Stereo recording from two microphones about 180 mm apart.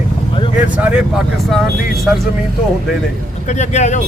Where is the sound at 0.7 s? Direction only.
5° right (ahead or behind).